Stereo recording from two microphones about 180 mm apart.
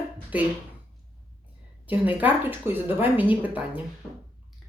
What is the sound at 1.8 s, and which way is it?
A woman's voice, 10° right (ahead or behind).